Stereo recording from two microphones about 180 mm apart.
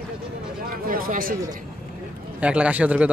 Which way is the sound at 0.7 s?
55° right (ahead or behind).